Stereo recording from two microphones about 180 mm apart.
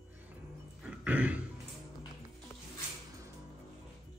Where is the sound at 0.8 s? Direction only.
10° right (ahead or behind).